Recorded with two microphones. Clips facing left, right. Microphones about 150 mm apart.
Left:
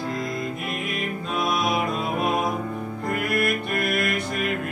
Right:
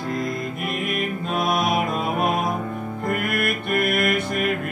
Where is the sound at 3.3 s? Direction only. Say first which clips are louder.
Even; 55° right (ahead or behind).